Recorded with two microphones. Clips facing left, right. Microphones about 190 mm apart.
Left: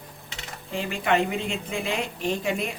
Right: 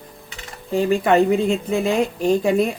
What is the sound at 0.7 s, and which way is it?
A woman's voice, 40° right (ahead or behind).